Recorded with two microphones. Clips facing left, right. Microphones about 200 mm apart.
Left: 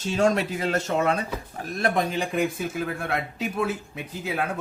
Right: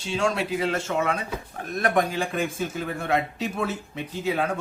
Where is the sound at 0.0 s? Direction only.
40° left (ahead or behind).